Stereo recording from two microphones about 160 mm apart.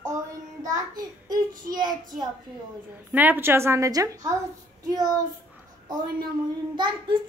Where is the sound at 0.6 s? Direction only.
25° right (ahead or behind).